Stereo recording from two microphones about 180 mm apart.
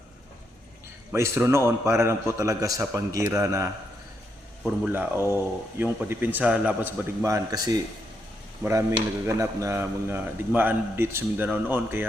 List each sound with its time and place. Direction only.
1.1 s a man's voice: 15° right (ahead or behind)